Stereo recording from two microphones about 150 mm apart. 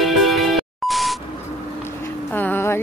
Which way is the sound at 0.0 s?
Centre (ahead or behind).